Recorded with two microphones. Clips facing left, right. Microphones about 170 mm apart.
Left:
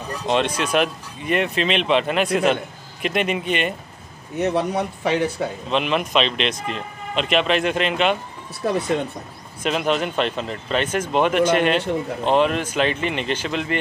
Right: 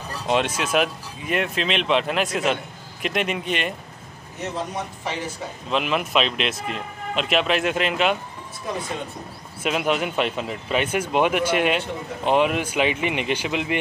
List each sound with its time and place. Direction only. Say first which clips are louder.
0.6 s speech: left 2 dB; 5° right (ahead or behind)
4.4 s a man's voice: left 8 dB; 65° left (ahead or behind)
5.7 s speech: even; 5° right (ahead or behind)
9.6 s speech: left 1 dB; 5° right (ahead or behind)